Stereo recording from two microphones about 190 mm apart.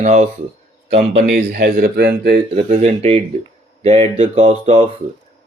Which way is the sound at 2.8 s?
35° right (ahead or behind).